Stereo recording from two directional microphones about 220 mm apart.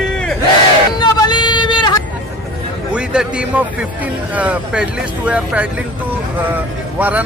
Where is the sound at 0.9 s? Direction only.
20° left (ahead or behind).